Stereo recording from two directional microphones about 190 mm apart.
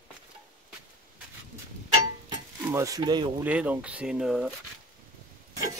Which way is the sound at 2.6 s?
15° right (ahead or behind).